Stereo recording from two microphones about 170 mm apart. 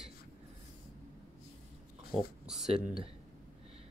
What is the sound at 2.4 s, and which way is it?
Speech, centre (ahead or behind).